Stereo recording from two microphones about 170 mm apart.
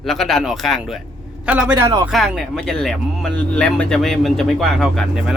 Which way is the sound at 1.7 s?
20° right (ahead or behind).